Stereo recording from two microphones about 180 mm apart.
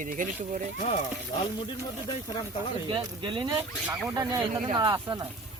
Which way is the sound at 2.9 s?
25° right (ahead or behind).